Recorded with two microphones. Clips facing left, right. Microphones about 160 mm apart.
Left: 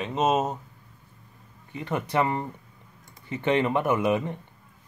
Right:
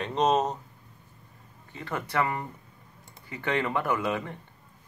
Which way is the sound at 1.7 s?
20° left (ahead or behind).